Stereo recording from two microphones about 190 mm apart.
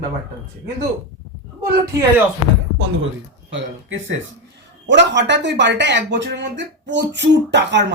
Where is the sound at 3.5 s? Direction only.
80° right.